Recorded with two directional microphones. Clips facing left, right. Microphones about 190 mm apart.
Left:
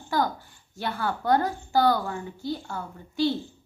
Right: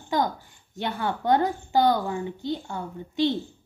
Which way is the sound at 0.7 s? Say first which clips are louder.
Right 1 dB; 20° right (ahead or behind).